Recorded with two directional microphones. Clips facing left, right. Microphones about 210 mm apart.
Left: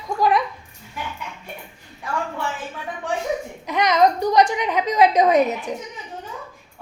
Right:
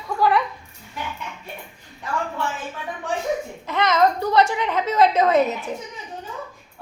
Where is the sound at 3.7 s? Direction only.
15° left (ahead or behind).